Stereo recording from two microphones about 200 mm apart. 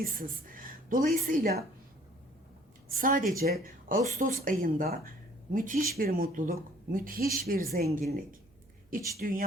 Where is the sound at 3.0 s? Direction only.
45° right (ahead or behind).